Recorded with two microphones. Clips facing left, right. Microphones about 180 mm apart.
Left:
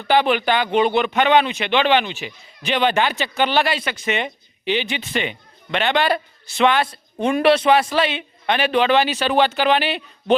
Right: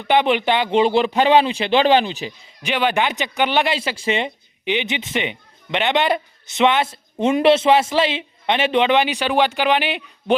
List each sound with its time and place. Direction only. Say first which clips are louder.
0.1 s a man's voice: even; 20° right (ahead or behind)
2.6 s speech: left 1 dB; 10° right (ahead or behind); by 4.3 s 30° right (ahead or behind)
4.6 s a man's voice: even; 20° right (ahead or behind)